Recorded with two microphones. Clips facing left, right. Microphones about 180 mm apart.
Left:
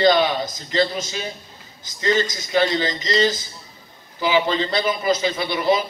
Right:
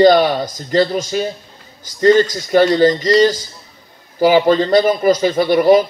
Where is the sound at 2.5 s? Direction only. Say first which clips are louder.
Right 9 dB; 45° right (ahead or behind).